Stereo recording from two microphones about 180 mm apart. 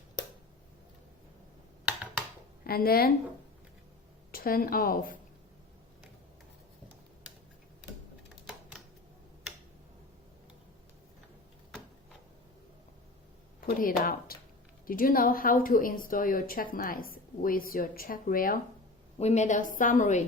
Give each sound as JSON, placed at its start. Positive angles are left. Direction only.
{"t": 2.6, "sound": "a woman's voice", "side_deg": 55}
{"t": 4.3, "sound": "a woman's voice", "side_deg": 55}
{"t": 13.6, "sound": "a woman's voice", "side_deg": 50}
{"t": 19.2, "sound": "a woman's voice", "side_deg": 40}